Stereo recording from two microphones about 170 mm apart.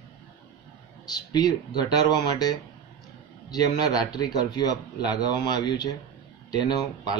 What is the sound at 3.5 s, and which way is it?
Speech, 25° left (ahead or behind).